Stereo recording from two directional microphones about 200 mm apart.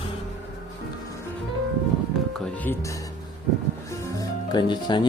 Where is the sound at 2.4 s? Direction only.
5° left (ahead or behind).